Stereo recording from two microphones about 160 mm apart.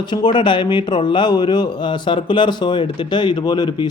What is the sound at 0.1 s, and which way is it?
A man's voice, 25° left (ahead or behind).